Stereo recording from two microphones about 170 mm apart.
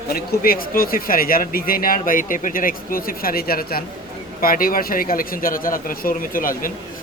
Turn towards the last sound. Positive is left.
turn(degrees=55)  # may be behind; listen again after turning